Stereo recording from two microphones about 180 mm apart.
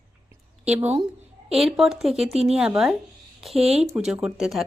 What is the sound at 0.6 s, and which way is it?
A woman's voice, 10° right (ahead or behind).